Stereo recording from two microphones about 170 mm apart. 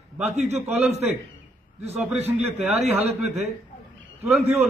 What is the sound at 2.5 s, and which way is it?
A man's voice, centre (ahead or behind).